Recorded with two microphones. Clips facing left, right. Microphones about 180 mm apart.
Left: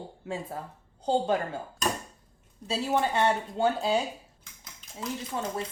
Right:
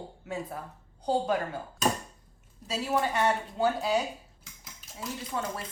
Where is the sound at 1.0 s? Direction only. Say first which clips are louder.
Left 2 dB; 25° left (ahead or behind).